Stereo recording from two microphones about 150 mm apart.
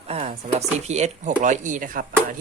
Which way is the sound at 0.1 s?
45° right (ahead or behind).